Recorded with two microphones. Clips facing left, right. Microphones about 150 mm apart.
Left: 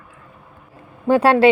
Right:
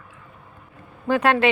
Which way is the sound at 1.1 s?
30° left (ahead or behind).